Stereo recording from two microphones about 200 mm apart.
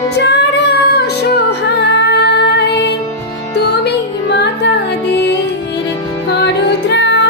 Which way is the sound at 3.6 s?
55° left (ahead or behind).